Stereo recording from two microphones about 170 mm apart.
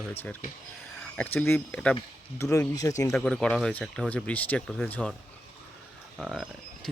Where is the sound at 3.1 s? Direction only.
5° left (ahead or behind).